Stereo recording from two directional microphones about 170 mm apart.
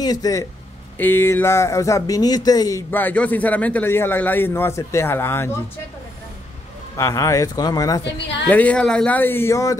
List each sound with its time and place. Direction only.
0.0 s speech: 20° left (ahead or behind)
2.9 s a man's voice: 10° left (ahead or behind)
7.0 s speech: 20° left (ahead or behind)
8.5 s a man's voice: 10° left (ahead or behind)